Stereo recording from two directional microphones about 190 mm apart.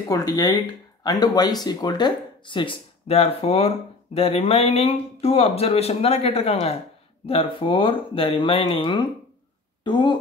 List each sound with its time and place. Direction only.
0.1 s speech: 20° left (ahead or behind)